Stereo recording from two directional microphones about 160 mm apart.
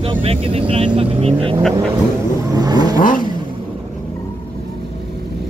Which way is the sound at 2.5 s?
25° right (ahead or behind).